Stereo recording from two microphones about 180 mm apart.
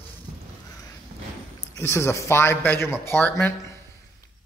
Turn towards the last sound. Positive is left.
turn(degrees=15)  # may be behind; listen again after turning